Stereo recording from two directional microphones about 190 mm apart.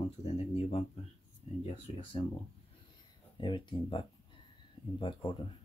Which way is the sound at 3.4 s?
25° left (ahead or behind).